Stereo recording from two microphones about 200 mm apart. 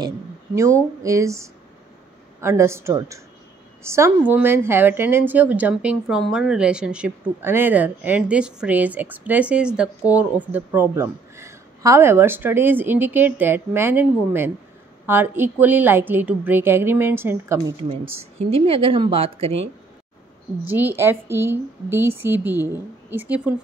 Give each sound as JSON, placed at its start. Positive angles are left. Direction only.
{"t": 1.0, "sound": "a woman's voice", "side_deg": -15}
{"t": 18.5, "sound": "a woman's voice", "side_deg": -30}
{"t": 20.6, "sound": "a woman's voice", "side_deg": -10}